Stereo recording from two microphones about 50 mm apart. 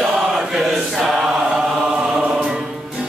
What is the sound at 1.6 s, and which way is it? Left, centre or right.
Music, centre.